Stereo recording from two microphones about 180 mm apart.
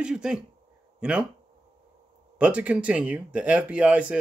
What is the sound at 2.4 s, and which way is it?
A man's voice, 5° right (ahead or behind).